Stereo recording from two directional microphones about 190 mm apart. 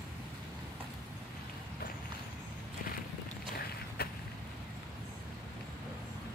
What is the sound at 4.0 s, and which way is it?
Vehicle, 55° left (ahead or behind).